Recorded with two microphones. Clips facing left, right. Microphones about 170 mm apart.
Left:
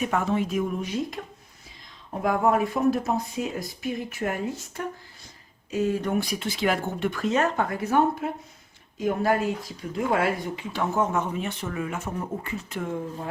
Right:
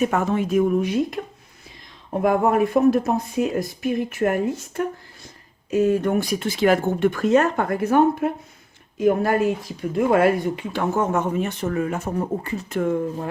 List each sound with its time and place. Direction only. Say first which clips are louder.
0.0 s speech: right 4 dB; 45° right (ahead or behind)
2.2 s speech: right 4 dB; 55° right (ahead or behind)